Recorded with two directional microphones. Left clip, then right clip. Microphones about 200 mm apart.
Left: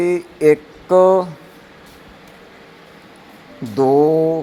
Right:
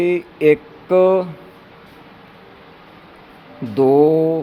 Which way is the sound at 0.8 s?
Centre (ahead or behind).